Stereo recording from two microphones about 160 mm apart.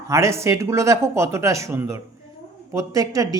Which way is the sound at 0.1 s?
20° right (ahead or behind).